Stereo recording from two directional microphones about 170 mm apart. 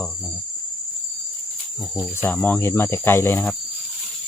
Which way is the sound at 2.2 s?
10° left (ahead or behind).